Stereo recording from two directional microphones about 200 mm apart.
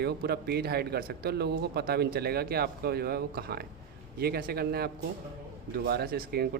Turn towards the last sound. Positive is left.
turn(degrees=-50)  # may be behind; listen again after turning